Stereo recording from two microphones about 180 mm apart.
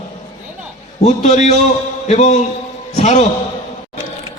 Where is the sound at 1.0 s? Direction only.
40° left (ahead or behind).